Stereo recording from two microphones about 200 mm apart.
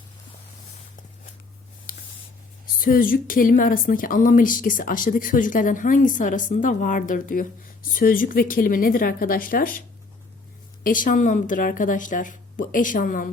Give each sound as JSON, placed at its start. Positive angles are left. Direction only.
{"t": 2.7, "sound": "speech", "side_deg": 45}
{"t": 10.8, "sound": "a woman's voice", "side_deg": 40}